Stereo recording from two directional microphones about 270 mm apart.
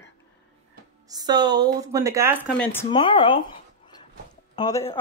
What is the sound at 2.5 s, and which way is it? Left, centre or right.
Speech, centre.